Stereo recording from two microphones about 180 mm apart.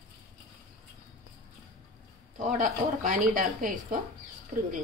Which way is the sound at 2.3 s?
45° right (ahead or behind).